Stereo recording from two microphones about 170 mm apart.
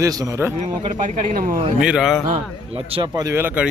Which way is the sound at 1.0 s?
50° right (ahead or behind).